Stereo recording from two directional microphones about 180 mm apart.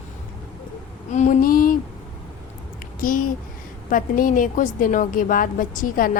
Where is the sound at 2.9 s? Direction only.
50° left (ahead or behind).